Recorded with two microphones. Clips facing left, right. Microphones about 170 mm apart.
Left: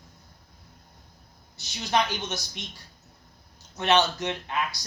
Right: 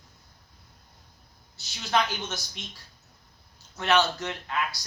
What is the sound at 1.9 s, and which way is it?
Speech, 15° left (ahead or behind).